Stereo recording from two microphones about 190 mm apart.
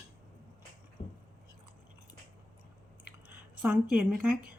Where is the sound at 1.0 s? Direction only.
25° left (ahead or behind).